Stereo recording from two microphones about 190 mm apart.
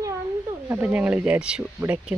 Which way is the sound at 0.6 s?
10° right (ahead or behind).